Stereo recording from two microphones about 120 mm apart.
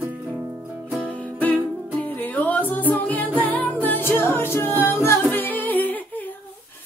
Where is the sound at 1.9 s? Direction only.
15° left (ahead or behind).